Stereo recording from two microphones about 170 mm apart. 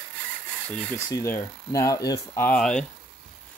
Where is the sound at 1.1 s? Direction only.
15° left (ahead or behind).